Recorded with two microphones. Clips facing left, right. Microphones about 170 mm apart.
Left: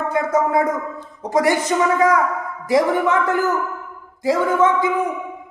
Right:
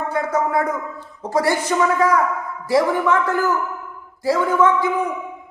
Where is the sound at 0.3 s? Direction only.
20° left (ahead or behind).